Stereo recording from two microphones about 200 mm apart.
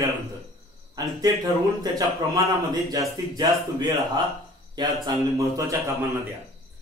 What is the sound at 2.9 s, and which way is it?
A man's voice, 20° right (ahead or behind).